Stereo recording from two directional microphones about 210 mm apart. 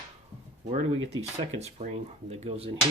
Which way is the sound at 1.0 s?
30° right (ahead or behind).